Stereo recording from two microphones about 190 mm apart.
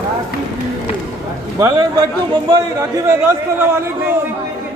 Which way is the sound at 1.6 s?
20° right (ahead or behind).